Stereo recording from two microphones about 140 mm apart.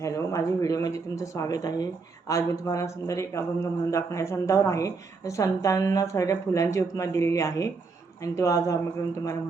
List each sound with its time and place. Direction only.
0.0 s speech: 20° left (ahead or behind)